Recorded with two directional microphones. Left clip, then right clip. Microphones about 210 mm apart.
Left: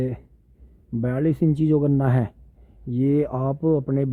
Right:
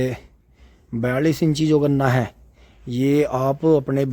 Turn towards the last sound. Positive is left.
turn(degrees=-5)  # may be behind; listen again after turning